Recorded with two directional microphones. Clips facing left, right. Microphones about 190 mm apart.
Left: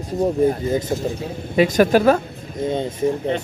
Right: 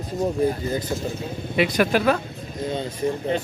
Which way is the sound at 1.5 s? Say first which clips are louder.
Left 5 dB; 40° left (ahead or behind).